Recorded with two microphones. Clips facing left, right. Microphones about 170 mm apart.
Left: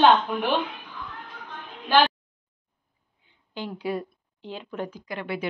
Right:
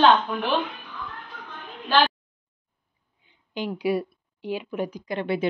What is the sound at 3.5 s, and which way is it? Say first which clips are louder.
Speech: right 5 dB; 15° right (ahead or behind).